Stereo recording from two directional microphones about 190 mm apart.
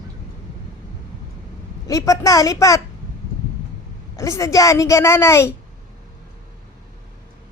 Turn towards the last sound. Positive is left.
turn(degrees=15)  # may be behind; listen again after turning